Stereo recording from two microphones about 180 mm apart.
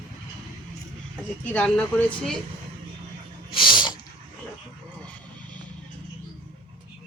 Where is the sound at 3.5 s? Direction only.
25° left (ahead or behind).